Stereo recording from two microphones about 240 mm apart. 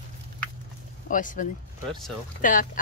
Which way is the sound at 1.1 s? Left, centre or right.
Left.